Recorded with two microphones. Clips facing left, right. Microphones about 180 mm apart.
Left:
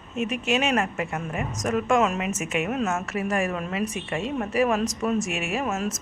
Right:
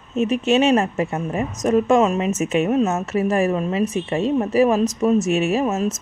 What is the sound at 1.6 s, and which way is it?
A woman's voice, 25° right (ahead or behind).